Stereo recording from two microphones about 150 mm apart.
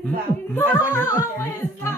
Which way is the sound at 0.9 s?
20° left (ahead or behind).